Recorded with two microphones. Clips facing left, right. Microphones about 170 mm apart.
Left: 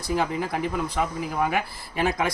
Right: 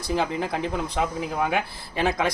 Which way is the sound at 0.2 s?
25° right (ahead or behind).